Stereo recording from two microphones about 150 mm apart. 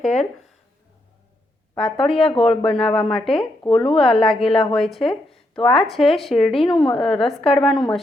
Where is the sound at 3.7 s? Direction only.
40° left (ahead or behind).